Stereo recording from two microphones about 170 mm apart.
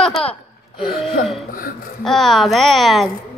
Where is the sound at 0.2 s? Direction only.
Centre (ahead or behind).